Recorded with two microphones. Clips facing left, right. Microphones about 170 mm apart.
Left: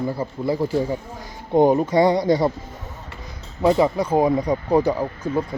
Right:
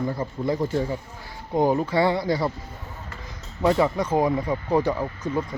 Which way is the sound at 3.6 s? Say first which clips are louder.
Left 3 dB; 15° left (ahead or behind).